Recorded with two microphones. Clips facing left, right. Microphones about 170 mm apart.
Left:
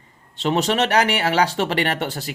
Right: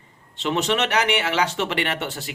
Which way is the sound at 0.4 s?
40° left (ahead or behind).